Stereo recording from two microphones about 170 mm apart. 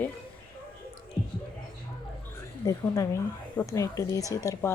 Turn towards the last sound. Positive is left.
turn(degrees=20)  # may be behind; listen again after turning